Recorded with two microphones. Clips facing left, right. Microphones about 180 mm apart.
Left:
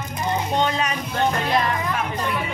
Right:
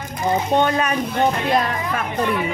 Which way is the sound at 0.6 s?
55° right (ahead or behind).